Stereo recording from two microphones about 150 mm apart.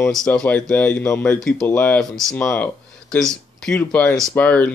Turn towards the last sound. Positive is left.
turn(degrees=10)  # may be behind; listen again after turning